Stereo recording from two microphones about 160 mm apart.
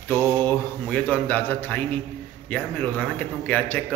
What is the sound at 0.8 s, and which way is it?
A man's voice, 10° left (ahead or behind).